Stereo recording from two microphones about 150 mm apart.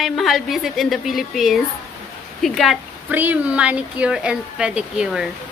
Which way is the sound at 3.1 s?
10° right (ahead or behind).